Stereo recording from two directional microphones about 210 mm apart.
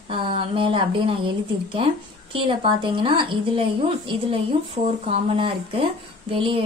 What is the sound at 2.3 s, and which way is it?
A woman's voice, 25° right (ahead or behind).